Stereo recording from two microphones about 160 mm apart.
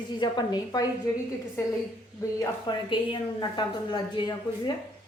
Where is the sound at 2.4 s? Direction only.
30° left (ahead or behind).